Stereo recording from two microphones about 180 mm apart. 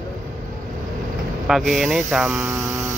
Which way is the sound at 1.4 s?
Centre (ahead or behind).